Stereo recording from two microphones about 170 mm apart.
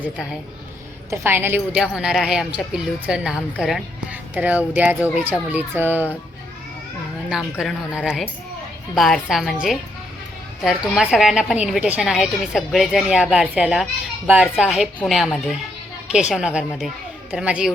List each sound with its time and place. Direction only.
1.1 s a woman's voice: 15° right (ahead or behind)
7.6 s a woman's voice: centre (ahead or behind)